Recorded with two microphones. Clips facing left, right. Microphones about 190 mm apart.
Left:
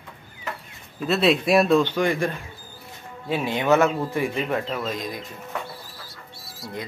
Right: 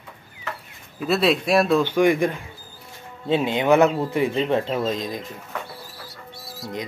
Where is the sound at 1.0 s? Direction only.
Centre (ahead or behind); by 5.1 s 25° right (ahead or behind).